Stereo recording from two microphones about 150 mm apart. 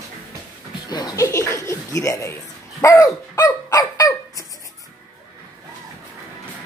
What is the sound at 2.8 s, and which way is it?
Dog, 20° left (ahead or behind).